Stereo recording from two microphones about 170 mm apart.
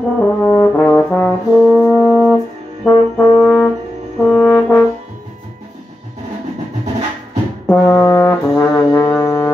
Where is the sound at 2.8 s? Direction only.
10° left (ahead or behind).